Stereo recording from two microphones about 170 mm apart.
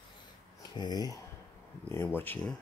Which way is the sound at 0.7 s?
25° left (ahead or behind).